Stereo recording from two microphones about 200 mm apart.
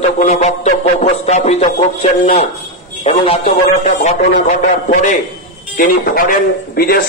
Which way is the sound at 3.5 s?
40° left (ahead or behind).